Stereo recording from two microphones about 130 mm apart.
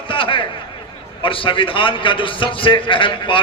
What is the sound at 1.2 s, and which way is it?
A man's voice, 40° left (ahead or behind).